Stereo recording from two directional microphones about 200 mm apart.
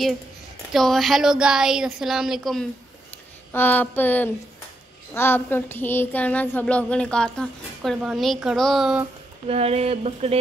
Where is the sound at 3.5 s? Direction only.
10° left (ahead or behind).